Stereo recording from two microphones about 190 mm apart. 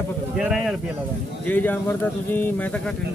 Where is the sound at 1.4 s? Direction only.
10° left (ahead or behind).